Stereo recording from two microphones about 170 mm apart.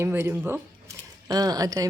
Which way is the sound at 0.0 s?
15° right (ahead or behind).